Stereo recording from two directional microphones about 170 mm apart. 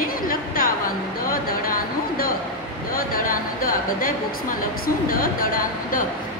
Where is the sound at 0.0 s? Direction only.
55° left (ahead or behind).